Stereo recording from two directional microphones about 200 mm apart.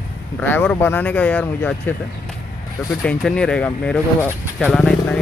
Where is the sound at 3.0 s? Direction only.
5° left (ahead or behind).